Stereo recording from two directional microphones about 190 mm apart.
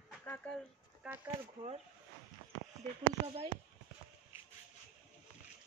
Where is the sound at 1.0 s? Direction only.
5° right (ahead or behind).